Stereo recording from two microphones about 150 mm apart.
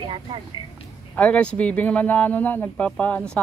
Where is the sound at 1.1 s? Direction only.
10° left (ahead or behind).